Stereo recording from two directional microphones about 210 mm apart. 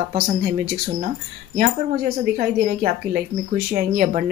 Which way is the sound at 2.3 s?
40° right (ahead or behind).